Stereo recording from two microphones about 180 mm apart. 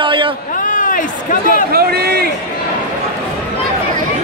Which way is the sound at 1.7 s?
60° right (ahead or behind).